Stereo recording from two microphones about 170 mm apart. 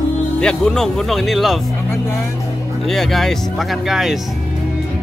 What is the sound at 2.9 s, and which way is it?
Speech, centre (ahead or behind).